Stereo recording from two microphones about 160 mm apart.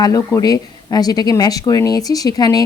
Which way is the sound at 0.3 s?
25° left (ahead or behind).